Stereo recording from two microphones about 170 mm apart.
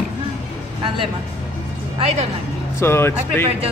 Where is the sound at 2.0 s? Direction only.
35° right (ahead or behind).